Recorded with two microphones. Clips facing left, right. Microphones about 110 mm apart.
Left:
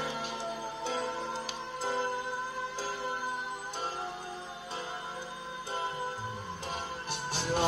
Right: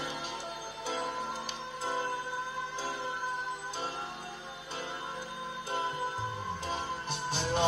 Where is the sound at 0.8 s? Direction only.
Centre (ahead or behind).